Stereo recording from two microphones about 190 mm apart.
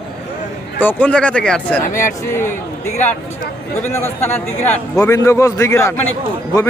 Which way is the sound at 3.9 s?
15° left (ahead or behind).